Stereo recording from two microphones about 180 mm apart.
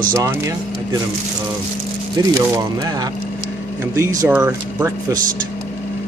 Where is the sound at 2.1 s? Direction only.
20° right (ahead or behind).